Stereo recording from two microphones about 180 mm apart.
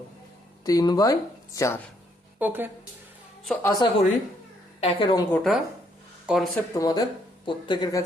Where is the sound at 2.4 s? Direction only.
10° right (ahead or behind).